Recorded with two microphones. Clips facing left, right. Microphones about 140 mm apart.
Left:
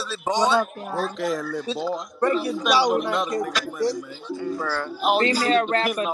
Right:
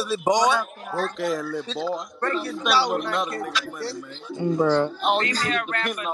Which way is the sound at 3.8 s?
15° left (ahead or behind).